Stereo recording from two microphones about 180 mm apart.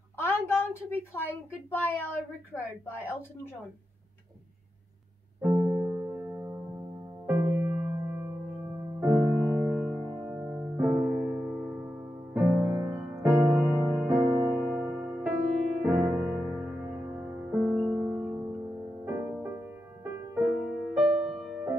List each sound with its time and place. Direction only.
0.2 s a sound: 15° left (ahead or behind)
1.7 s a woman's voice: 10° left (ahead or behind)
5.4 s music: 15° right (ahead or behind)
20.6 s music: centre (ahead or behind)